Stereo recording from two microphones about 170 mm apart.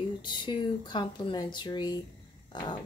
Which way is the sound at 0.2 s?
25° left (ahead or behind).